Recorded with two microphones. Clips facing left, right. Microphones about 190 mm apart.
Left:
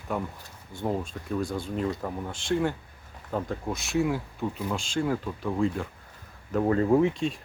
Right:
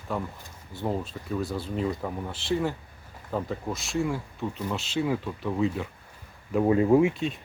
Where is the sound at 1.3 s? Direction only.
5° right (ahead or behind).